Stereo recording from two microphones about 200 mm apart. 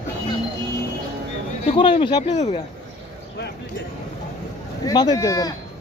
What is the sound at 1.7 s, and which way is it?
Speech, 25° left (ahead or behind).